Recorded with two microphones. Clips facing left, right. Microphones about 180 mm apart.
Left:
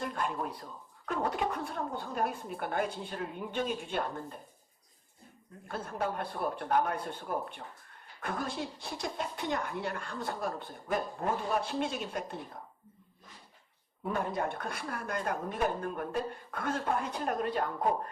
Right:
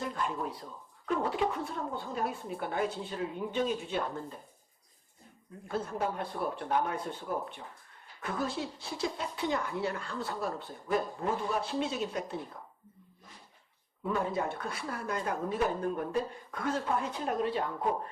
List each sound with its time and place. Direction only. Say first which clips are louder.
0.0 s speech: even; 55° left (ahead or behind)
5.6 s speech: right 2 dB; 55° left (ahead or behind)
14.1 s speech: right 1 dB; 55° left (ahead or behind)